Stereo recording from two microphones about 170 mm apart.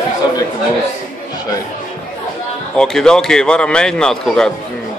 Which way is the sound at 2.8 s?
5° left (ahead or behind).